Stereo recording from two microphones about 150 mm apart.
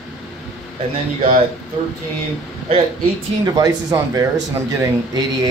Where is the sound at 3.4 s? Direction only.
25° right (ahead or behind).